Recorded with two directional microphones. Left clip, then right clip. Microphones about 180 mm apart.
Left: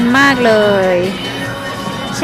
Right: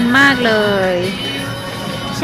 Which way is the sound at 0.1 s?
15° left (ahead or behind).